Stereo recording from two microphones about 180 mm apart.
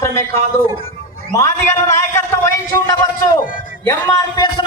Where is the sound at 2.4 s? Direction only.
20° left (ahead or behind).